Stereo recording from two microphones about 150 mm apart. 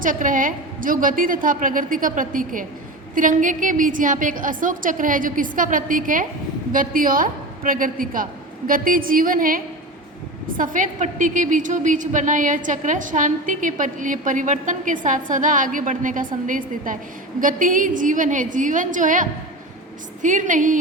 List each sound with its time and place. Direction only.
0.0 s a woman's voice: 60° right (ahead or behind)